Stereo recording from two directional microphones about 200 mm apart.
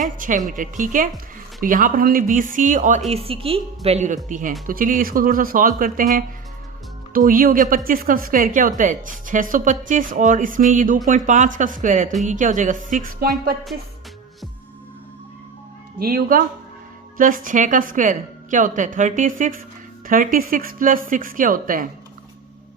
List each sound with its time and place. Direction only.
0.0 s a woman's voice: 40° right (ahead or behind)
3.1 s a woman's voice: 30° right (ahead or behind); by 13.2 s 45° right (ahead or behind)
16.0 s a woman's voice: 50° right (ahead or behind)